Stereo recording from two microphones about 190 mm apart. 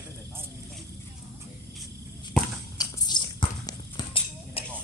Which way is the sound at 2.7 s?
20° left (ahead or behind).